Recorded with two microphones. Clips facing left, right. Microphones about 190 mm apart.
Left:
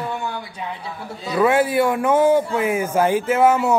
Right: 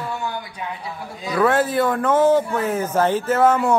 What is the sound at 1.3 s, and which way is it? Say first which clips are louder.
Speech: left 1 dB; 10° left (ahead or behind).